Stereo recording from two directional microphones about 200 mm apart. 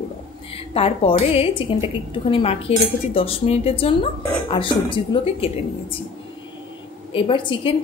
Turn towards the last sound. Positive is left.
turn(degrees=25)  # may be behind; listen again after turning